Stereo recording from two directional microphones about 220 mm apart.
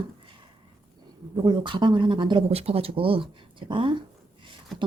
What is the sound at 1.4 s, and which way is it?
Speech, 20° right (ahead or behind).